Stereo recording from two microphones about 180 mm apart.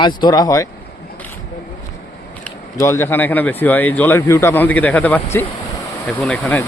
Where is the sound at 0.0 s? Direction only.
25° left (ahead or behind).